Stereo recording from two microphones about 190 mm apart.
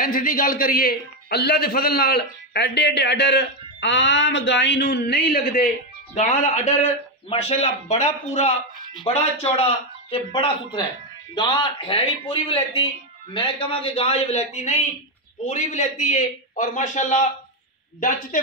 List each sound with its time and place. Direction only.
0.0 s a man's voice: 45° left (ahead or behind)
6.1 s a man's voice: 40° left (ahead or behind)
18.3 s speech: 45° left (ahead or behind)